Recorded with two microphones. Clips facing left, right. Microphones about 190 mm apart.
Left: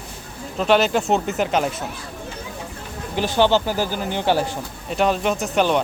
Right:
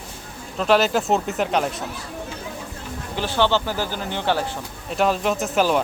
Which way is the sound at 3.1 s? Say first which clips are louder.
Left 3 dB; 15° left (ahead or behind).